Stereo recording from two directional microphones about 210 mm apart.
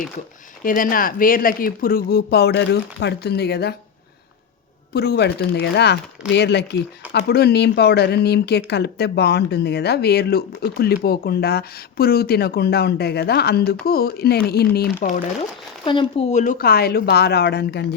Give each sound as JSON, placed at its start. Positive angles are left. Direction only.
{"t": 0.6, "sound": "speech", "side_deg": 40}
{"t": 4.9, "sound": "speech", "side_deg": 50}
{"t": 15.8, "sound": "speech", "side_deg": 25}